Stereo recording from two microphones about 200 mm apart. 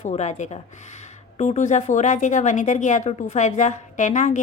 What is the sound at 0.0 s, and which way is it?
Speech, 35° left (ahead or behind).